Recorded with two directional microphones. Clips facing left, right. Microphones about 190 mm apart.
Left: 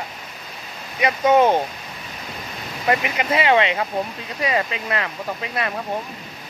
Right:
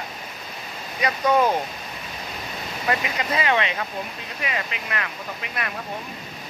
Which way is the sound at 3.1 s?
25° left (ahead or behind).